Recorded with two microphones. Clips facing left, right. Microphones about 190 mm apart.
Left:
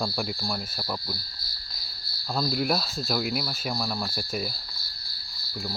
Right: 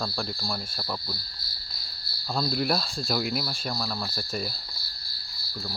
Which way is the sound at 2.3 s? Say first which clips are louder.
Even; centre (ahead or behind).